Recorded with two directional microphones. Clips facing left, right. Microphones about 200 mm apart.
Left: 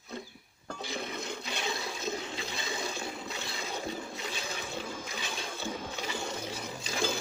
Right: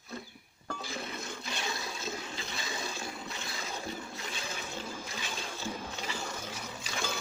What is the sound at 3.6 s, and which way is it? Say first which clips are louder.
Toilet flush: left 3 dB; 15° left (ahead or behind).